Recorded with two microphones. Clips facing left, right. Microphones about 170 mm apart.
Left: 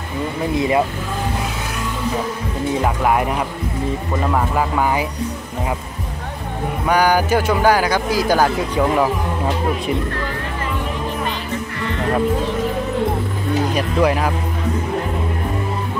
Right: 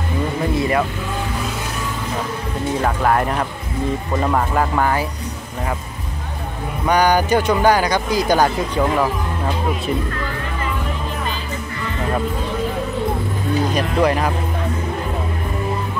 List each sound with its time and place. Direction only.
0.6 s speech: 20° left (ahead or behind)
2.8 s speech: 10° left (ahead or behind)
6.9 s speech: 5° left (ahead or behind)
13.7 s speech: 10° left (ahead or behind)